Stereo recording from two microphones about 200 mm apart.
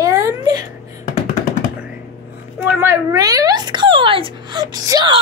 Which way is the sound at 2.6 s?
10° right (ahead or behind).